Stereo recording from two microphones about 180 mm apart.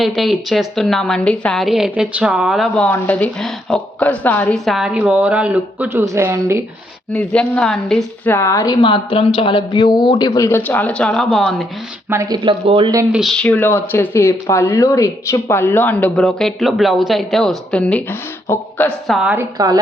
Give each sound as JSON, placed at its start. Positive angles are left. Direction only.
{"t": 0.0, "sound": "a woman's voice", "side_deg": 0}
{"t": 7.1, "sound": "a woman's voice", "side_deg": 5}
{"t": 12.1, "sound": "speech", "side_deg": -25}
{"t": 13.1, "sound": "speech", "side_deg": 0}
{"t": 19.0, "sound": "a woman's voice", "side_deg": -5}
{"t": 19.4, "sound": "speech", "side_deg": -20}